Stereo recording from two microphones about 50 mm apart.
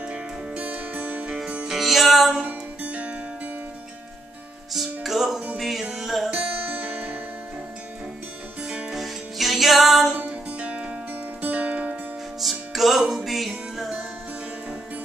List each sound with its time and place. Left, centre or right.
0.0 s music: right
1.7 s music: centre
2.4 s music: right
4.7 s music: centre
6.3 s music: right
8.9 s music: centre
10.1 s music: right
12.4 s music: centre